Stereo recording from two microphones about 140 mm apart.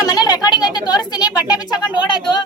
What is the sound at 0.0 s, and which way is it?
A child's voice, 30° left (ahead or behind).